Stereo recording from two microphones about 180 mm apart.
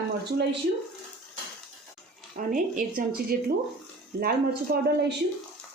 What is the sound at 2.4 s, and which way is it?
Speech, 45° right (ahead or behind).